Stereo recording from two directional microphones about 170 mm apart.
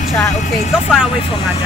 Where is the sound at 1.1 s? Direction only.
30° left (ahead or behind).